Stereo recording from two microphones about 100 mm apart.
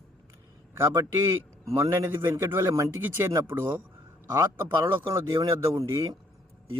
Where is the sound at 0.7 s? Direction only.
25° right (ahead or behind).